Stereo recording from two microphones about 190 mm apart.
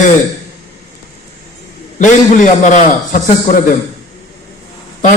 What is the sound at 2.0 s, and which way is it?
A man's voice, 40° left (ahead or behind).